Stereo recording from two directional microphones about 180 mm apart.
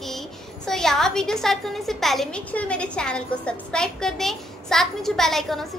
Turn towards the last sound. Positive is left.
turn(degrees=0)  # may be behind; listen again after turning